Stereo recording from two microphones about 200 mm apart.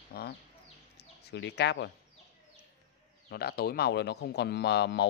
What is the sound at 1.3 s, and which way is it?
Speech, 60° left (ahead or behind).